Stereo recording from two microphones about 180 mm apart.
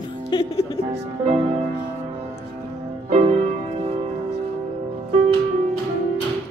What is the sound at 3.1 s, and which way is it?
Music, 35° right (ahead or behind).